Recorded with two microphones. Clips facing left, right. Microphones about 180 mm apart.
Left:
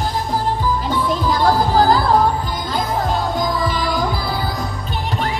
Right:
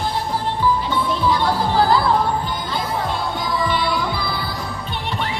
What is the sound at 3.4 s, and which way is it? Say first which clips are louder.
Music: left 1 dB; 40° left (ahead or behind).